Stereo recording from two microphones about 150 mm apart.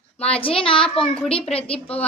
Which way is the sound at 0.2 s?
40° left (ahead or behind).